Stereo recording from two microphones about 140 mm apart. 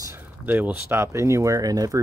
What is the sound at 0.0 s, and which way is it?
Speech, 15° right (ahead or behind).